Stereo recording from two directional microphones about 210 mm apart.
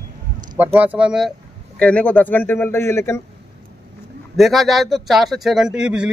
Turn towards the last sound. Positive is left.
turn(degrees=-5)  # may be behind; listen again after turning